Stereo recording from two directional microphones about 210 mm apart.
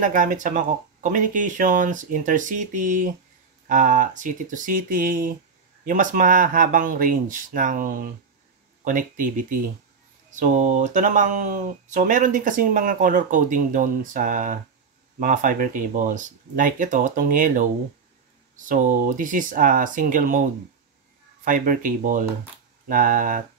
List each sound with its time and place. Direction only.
0.0 s speech: 40° right (ahead or behind)
21.5 s speech: 40° right (ahead or behind)